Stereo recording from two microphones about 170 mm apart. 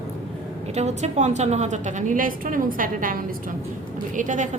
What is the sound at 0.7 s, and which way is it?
A woman's voice, 40° right (ahead or behind).